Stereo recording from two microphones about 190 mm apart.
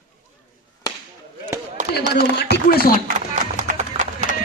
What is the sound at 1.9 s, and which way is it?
Speech, 60° left (ahead or behind).